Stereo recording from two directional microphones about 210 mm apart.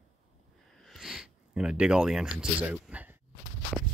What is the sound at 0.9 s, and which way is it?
Speech, centre (ahead or behind).